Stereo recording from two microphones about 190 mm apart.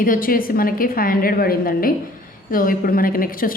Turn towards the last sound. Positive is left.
turn(degrees=50)  # may be behind; listen again after turning